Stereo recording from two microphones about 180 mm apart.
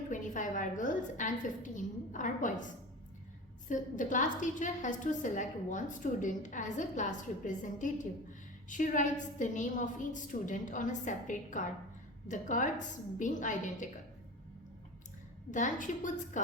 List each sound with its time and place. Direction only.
0.1 s a woman's voice: 45° left (ahead or behind)
3.7 s a woman's voice: 45° left (ahead or behind)
15.5 s a woman's voice: 45° left (ahead or behind)